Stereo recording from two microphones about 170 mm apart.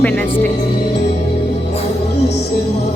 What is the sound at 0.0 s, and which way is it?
Speech, 10° left (ahead or behind).